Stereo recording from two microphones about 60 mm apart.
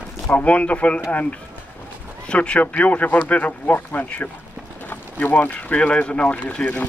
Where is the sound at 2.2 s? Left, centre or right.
Centre.